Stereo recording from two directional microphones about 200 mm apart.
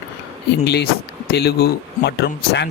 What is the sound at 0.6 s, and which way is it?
Speech, 55° left (ahead or behind).